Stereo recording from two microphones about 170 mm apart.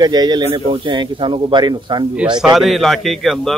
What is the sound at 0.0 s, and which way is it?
Speech, 25° right (ahead or behind).